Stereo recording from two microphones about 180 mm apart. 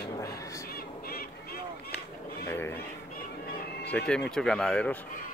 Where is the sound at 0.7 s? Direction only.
55° left (ahead or behind).